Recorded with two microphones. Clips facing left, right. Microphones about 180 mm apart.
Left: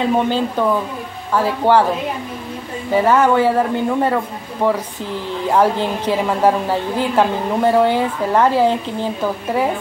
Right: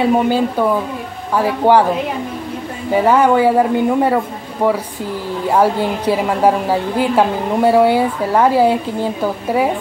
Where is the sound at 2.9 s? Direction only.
10° right (ahead or behind).